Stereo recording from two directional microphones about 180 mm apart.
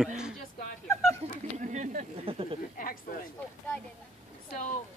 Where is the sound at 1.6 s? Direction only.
45° right (ahead or behind).